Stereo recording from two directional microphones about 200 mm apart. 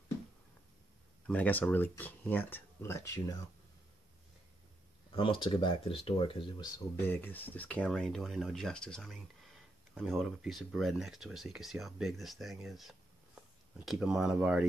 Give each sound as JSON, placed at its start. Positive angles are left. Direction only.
{"t": 1.2, "sound": "speech", "side_deg": 10}
{"t": 5.1, "sound": "speech", "side_deg": 25}
{"t": 7.0, "sound": "speech", "side_deg": 10}